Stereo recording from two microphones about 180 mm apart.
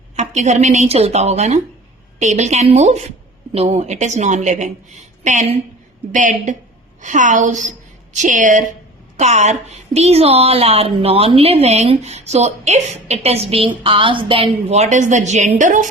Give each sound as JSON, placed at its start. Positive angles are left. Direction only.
{"t": 0.2, "sound": "a woman's voice", "side_deg": -40}